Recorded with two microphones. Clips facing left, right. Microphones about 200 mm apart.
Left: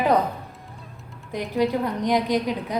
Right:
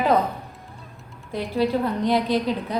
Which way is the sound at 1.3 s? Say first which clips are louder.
Even; 15° left (ahead or behind).